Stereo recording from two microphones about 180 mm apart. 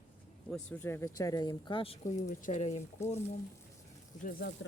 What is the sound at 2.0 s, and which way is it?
Speech, 45° left (ahead or behind).